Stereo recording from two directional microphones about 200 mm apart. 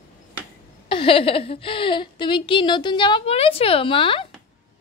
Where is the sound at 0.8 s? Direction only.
25° left (ahead or behind).